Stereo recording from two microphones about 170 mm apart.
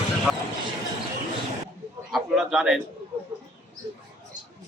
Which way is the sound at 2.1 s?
Centre (ahead or behind).